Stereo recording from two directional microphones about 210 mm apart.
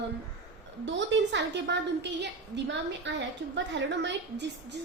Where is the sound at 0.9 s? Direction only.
60° right (ahead or behind).